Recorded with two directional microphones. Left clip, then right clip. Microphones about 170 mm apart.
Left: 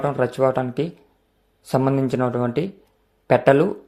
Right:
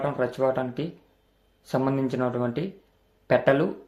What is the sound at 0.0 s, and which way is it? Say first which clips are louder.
Speech: left 5 dB; 40° left (ahead or behind).